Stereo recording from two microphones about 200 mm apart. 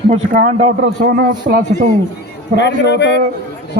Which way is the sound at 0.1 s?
35° right (ahead or behind).